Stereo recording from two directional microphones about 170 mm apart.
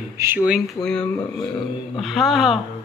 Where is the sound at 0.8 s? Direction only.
5° left (ahead or behind).